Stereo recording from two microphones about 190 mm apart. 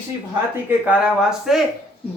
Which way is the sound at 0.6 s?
10° right (ahead or behind).